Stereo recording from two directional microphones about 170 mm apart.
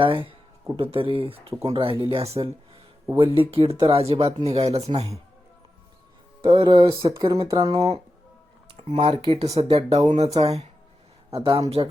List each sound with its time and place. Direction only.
0.0 s speech: 30° right (ahead or behind)
6.4 s speech: 30° right (ahead or behind)
7.8 s speech: 35° right (ahead or behind)